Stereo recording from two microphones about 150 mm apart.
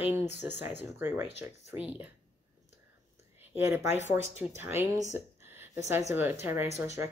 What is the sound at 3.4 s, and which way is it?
Speech, 15° right (ahead or behind).